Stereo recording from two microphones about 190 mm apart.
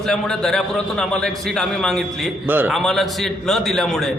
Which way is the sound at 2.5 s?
10° right (ahead or behind).